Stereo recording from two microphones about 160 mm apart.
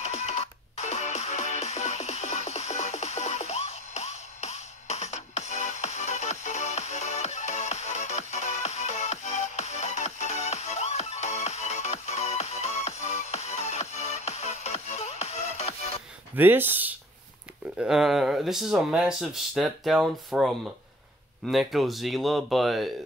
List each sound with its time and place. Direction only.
0.0 s music: 45° left (ahead or behind)
16.3 s speech: 10° right (ahead or behind)